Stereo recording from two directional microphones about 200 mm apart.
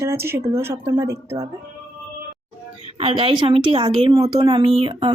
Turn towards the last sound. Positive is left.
turn(degrees=-30)  # may be behind; listen again after turning